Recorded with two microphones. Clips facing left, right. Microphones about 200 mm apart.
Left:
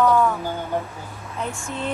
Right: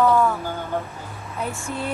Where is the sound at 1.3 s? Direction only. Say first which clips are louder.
Right 1 dB; centre (ahead or behind).